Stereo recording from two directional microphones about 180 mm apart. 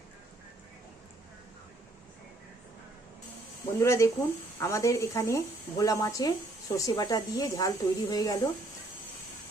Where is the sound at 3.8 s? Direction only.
15° left (ahead or behind).